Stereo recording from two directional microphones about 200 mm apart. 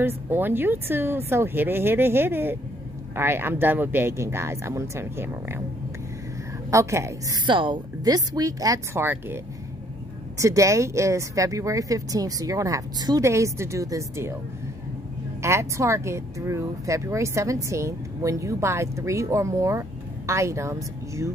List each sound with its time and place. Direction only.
0.0 s speech: 10° right (ahead or behind)
6.7 s speech: 15° right (ahead or behind)
15.4 s speech: 15° right (ahead or behind)